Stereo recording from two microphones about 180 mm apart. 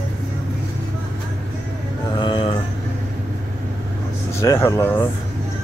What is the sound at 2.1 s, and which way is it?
Speech, 25° left (ahead or behind).